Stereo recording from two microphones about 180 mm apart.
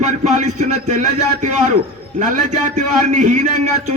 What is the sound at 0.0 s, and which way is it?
A man's voice, 40° right (ahead or behind).